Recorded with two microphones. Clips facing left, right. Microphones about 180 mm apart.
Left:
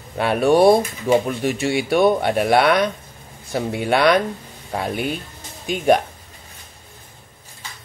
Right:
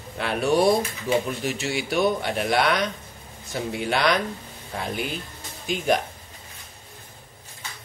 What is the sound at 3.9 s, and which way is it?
Speech, 60° left (ahead or behind).